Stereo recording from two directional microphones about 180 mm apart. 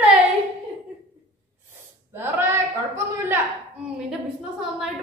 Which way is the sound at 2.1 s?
15° right (ahead or behind).